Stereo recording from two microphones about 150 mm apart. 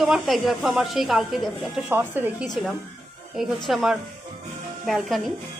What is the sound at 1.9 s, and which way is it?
Speech, 15° right (ahead or behind).